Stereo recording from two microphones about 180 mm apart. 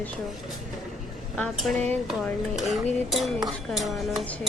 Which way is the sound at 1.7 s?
40° right (ahead or behind).